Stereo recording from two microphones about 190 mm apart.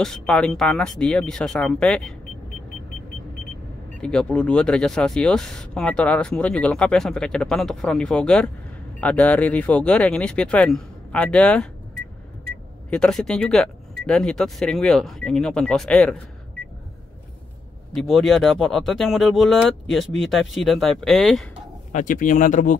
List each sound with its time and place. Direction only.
0.0 s speech: 5° left (ahead or behind)
4.0 s speech: 5° left (ahead or behind)
12.9 s speech: 5° left (ahead or behind)
17.9 s speech: centre (ahead or behind)
21.9 s speech: 45° left (ahead or behind)